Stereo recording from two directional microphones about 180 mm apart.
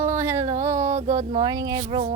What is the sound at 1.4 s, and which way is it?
Speech, 20° right (ahead or behind).